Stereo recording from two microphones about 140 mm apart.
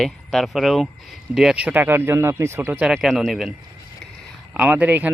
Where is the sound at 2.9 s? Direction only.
Centre (ahead or behind).